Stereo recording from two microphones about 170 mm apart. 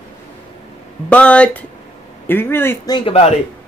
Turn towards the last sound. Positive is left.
turn(degrees=35)  # may be behind; listen again after turning